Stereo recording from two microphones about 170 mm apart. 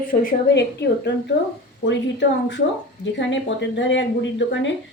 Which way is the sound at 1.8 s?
90° left.